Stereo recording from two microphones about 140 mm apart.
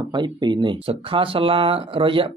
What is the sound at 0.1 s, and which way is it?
Speech, 30° right (ahead or behind).